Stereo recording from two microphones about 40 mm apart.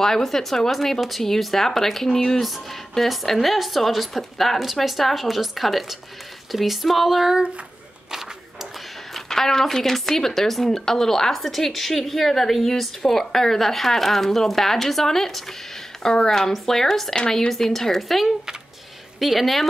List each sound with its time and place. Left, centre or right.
0.0 s a woman's voice: centre
2.4 s speech: centre
9.1 s a woman's voice: centre
17.1 s a woman's voice: left
17.5 s a woman's voice: centre